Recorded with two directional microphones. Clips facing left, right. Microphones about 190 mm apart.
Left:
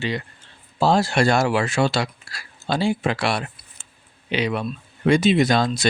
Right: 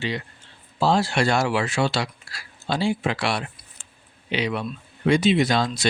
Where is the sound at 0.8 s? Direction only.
45° left (ahead or behind).